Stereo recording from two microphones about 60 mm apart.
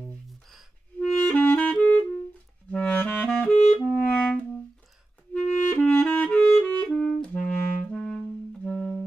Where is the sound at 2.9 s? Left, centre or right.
Left.